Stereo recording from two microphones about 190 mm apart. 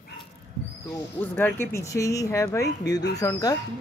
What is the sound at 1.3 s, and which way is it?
Speech, 10° left (ahead or behind).